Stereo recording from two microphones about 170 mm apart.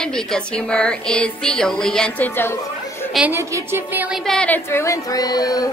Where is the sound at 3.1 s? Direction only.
10° right (ahead or behind).